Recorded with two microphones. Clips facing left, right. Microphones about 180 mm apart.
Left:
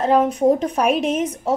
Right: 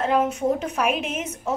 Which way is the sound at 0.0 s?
35° left (ahead or behind).